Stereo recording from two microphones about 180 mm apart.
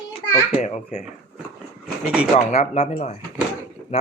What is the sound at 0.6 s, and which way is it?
Speech, 40° left (ahead or behind).